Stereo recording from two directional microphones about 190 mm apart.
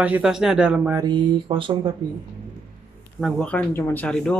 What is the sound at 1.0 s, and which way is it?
Speech, 25° right (ahead or behind).